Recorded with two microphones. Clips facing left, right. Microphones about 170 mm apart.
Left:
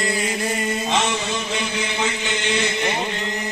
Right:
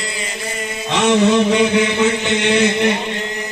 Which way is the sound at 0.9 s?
65° right (ahead or behind).